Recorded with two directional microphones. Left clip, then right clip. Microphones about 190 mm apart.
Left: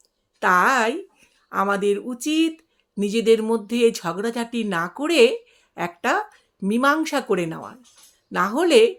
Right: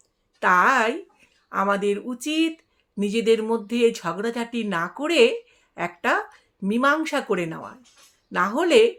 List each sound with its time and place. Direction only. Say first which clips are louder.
0.3 s speech: even; 30° left (ahead or behind)